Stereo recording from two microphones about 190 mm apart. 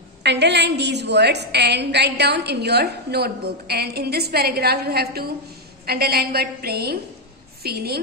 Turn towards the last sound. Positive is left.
turn(degrees=-55)  # may be behind; listen again after turning